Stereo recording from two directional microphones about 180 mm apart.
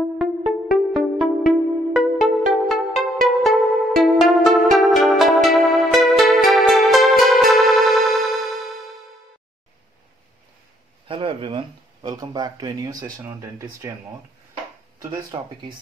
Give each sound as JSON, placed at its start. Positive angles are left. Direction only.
{"t": 0.5, "sound": "music", "side_deg": 0}
{"t": 11.1, "sound": "speech", "side_deg": -30}
{"t": 15.3, "sound": "speech", "side_deg": -25}